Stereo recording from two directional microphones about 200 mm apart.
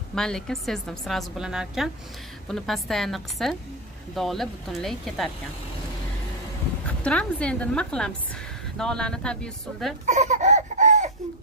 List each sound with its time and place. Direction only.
0.1 s a woman's voice: 5° left (ahead or behind)
6.9 s a woman's voice: 5° left (ahead or behind)
10.0 s a sound: 35° right (ahead or behind)